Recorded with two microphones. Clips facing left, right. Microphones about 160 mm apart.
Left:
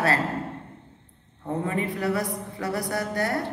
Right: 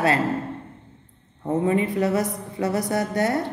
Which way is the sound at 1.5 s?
20° right (ahead or behind).